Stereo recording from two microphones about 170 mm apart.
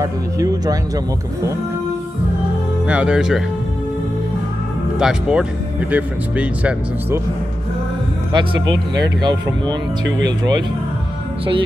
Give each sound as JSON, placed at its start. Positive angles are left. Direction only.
{"t": 0.0, "sound": "speech", "side_deg": -20}
{"t": 2.9, "sound": "speech", "side_deg": -5}
{"t": 4.9, "sound": "speech", "side_deg": -5}
{"t": 9.0, "sound": "speech", "side_deg": -25}
{"t": 10.0, "sound": "speech", "side_deg": -90}